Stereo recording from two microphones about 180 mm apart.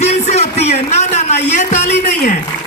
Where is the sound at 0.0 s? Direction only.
40° left (ahead or behind).